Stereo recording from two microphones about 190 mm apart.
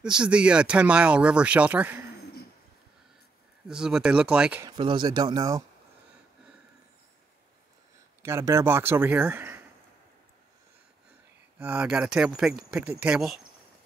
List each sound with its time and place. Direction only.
0.0 s speech: 5° right (ahead or behind)
3.6 s speech: 5° right (ahead or behind)
4.6 s speech: 25° right (ahead or behind)
8.2 s speech: 15° right (ahead or behind)
11.5 s speech: 10° right (ahead or behind)